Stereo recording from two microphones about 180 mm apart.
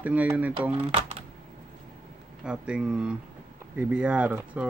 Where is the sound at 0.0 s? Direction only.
10° right (ahead or behind).